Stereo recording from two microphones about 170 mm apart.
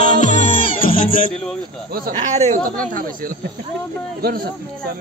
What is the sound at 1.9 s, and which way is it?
Speech, 60° right (ahead or behind).